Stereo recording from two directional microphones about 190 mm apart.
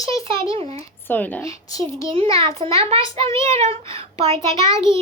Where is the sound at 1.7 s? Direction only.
30° right (ahead or behind).